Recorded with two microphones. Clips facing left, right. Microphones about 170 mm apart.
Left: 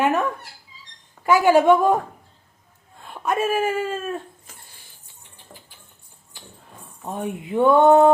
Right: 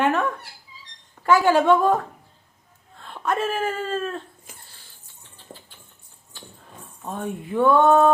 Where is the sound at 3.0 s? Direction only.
10° left (ahead or behind).